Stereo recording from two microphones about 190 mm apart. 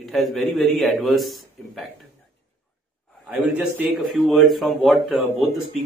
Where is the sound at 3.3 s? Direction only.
5° right (ahead or behind).